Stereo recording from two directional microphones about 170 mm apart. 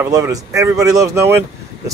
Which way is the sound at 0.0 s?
20° right (ahead or behind).